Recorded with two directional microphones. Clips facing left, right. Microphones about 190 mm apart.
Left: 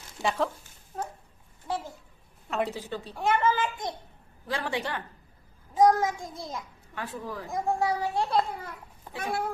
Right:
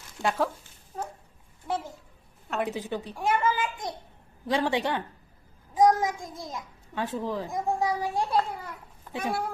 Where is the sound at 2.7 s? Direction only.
15° right (ahead or behind).